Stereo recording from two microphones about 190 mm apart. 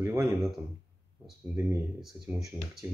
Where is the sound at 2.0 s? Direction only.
Centre (ahead or behind).